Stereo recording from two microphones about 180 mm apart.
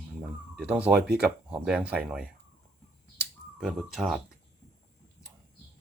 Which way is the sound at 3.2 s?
5° right (ahead or behind).